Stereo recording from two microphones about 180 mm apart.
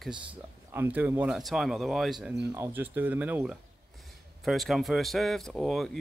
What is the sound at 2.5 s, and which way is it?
Speech, 15° right (ahead or behind).